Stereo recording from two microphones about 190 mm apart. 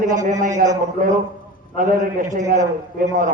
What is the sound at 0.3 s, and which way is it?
Speech, 40° right (ahead or behind).